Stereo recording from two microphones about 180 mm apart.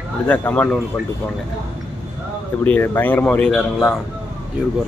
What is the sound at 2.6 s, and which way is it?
Speech, 10° left (ahead or behind).